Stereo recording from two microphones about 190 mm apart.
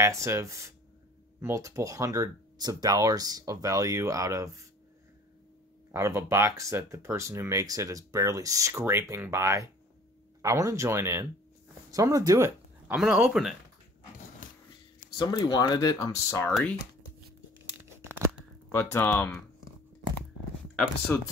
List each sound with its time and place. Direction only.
0.0 s speech: 15° right (ahead or behind)
5.9 s speech: 15° right (ahead or behind)
15.1 s speech: 20° left (ahead or behind)
18.7 s speech: 15° left (ahead or behind)
21.1 s speech: 10° left (ahead or behind)